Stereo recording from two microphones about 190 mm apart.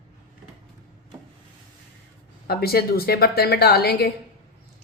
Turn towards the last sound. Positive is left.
turn(degrees=55)  # may be behind; listen again after turning